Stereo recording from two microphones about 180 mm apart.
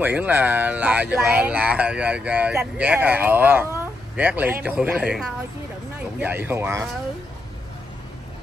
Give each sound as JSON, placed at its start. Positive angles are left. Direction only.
{"t": 0.0, "sound": "speech", "side_deg": -10}